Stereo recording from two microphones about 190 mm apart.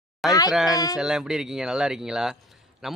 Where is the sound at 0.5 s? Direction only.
5° right (ahead or behind).